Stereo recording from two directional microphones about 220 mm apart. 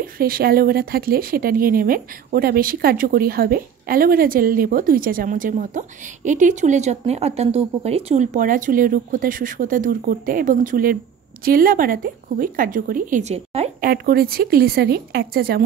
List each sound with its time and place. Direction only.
0.0 s speech: 40° right (ahead or behind)
13.8 s speech: 45° right (ahead or behind)